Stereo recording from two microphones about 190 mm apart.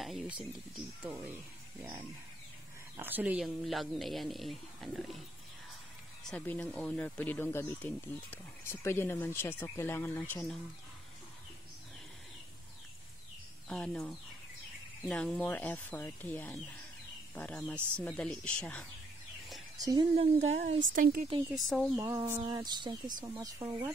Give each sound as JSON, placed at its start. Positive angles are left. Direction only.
{"t": 0.0, "sound": "speech", "side_deg": 0}
{"t": 6.3, "sound": "speech", "side_deg": 5}
{"t": 13.7, "sound": "speech", "side_deg": 5}
{"t": 19.8, "sound": "speech", "side_deg": -20}
{"t": 20.2, "sound": "speech", "side_deg": -35}
{"t": 21.6, "sound": "speech", "side_deg": 0}
{"t": 21.9, "sound": "speech", "side_deg": -15}